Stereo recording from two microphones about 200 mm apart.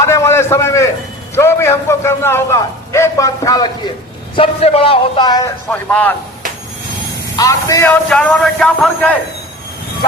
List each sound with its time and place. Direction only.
0.0 s a sound: 15° left (ahead or behind)
1.4 s a man's voice: 15° left (ahead or behind)
4.4 s a man's voice: 30° left (ahead or behind)
5.7 s a man's voice: 5° left (ahead or behind)
7.3 s a man's voice: 15° left (ahead or behind)
8.1 s a man's voice: 5° left (ahead or behind)